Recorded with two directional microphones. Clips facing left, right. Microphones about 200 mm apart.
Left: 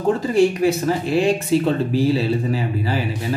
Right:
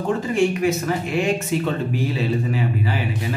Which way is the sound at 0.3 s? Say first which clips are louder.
Left 2 dB; 35° left (ahead or behind).